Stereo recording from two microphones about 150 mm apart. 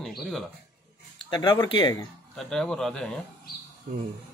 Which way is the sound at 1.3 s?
30° left (ahead or behind).